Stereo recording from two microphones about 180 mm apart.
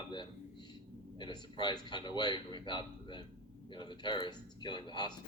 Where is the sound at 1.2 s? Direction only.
25° left (ahead or behind).